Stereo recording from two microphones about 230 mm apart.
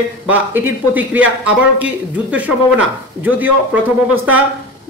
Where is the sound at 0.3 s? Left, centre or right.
Centre.